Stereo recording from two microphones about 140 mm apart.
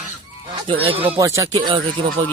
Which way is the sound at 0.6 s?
40° right (ahead or behind).